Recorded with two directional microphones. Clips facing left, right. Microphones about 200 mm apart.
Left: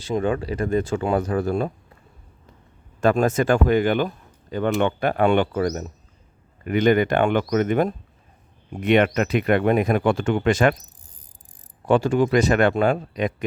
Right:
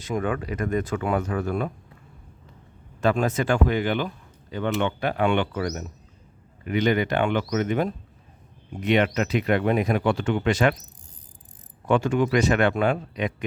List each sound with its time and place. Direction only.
0.0 s speech: 30° left (ahead or behind)
3.0 s speech: 45° left (ahead or behind)
6.7 s speech: 50° left (ahead or behind)
11.9 s speech: 35° left (ahead or behind)